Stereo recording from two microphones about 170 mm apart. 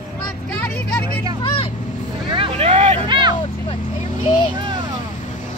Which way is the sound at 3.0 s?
25° right (ahead or behind).